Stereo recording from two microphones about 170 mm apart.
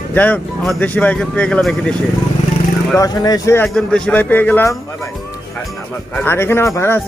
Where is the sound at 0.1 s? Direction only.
10° left (ahead or behind).